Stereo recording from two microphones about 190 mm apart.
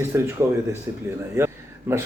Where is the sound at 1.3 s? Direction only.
15° right (ahead or behind).